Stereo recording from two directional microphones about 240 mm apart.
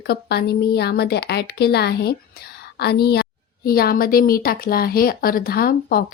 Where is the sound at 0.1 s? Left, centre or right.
Left.